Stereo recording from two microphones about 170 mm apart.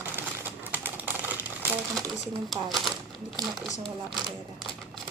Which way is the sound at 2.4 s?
Centre (ahead or behind).